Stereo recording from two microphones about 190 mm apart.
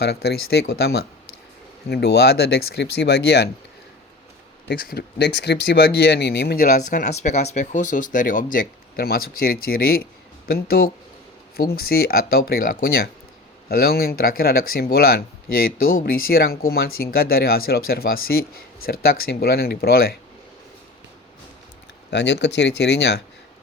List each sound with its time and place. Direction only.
0.0 s speech: 55° left (ahead or behind)
4.7 s speech: 50° left (ahead or behind)
22.1 s speech: 65° left (ahead or behind)